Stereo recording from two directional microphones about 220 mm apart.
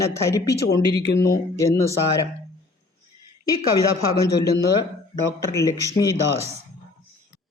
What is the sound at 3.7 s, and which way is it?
A man's voice, 15° left (ahead or behind).